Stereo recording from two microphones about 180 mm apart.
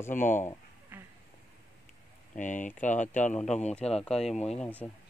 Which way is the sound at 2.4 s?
45° left (ahead or behind).